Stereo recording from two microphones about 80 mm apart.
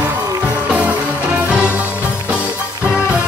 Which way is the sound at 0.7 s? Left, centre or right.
Centre.